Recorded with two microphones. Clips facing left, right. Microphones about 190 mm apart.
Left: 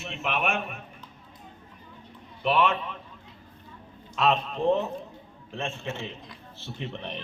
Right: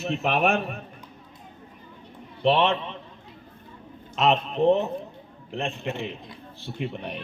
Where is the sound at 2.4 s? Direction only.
30° right (ahead or behind).